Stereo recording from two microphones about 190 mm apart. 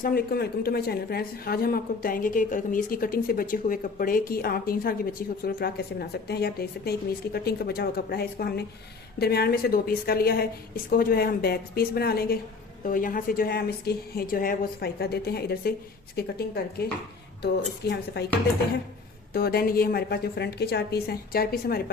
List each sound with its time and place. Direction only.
0.0 s a woman's voice: 50° left (ahead or behind)
19.3 s a woman's voice: 55° left (ahead or behind)